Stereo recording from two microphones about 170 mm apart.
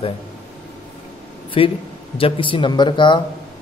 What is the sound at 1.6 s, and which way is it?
A man's voice, 30° left (ahead or behind).